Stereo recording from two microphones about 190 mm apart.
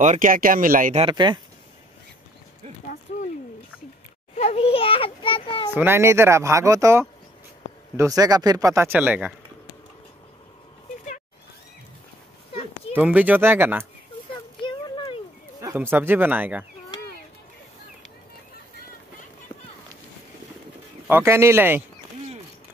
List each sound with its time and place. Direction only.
0.0 s speech: 40° right (ahead or behind)
0.9 s speech: 25° right (ahead or behind)
3.1 s speech: 40° left (ahead or behind)
4.4 s a child's voice: 30° left (ahead or behind)
5.8 s speech: 10° right (ahead or behind)
12.9 s speech: 10° right (ahead or behind)
14.6 s a sound: 25° left (ahead or behind)
15.6 s speech: 10° right (ahead or behind)
21.1 s speech: 15° right (ahead or behind)